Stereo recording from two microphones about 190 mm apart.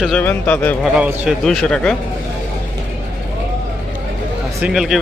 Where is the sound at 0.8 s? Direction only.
5° right (ahead or behind).